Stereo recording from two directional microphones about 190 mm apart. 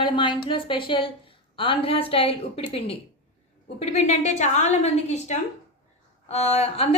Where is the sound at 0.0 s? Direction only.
25° left (ahead or behind).